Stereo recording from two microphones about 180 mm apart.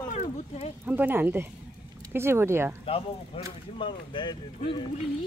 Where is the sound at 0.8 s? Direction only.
10° right (ahead or behind).